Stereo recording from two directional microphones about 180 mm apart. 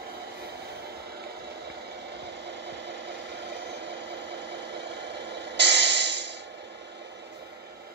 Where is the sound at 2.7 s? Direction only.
70° right (ahead or behind).